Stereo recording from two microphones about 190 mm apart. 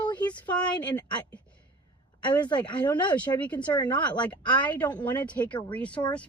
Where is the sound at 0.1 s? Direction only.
25° left (ahead or behind).